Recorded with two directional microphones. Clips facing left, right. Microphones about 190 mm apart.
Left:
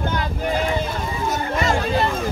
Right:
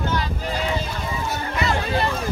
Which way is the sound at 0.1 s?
50° left (ahead or behind).